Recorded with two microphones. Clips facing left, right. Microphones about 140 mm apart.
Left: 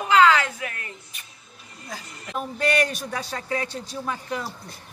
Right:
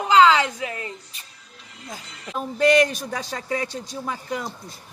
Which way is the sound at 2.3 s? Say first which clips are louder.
Right 6 dB; 20° right (ahead or behind).